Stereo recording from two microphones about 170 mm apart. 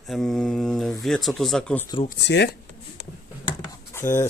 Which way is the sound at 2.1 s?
90° left.